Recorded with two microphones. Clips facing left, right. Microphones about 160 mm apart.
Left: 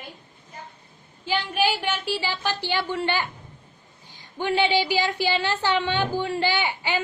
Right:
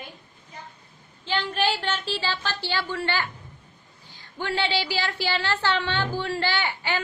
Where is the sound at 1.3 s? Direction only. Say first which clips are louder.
Left 1 dB; 10° left (ahead or behind).